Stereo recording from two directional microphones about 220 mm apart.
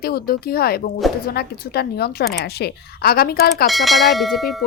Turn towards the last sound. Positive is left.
turn(degrees=0)  # may be behind; listen again after turning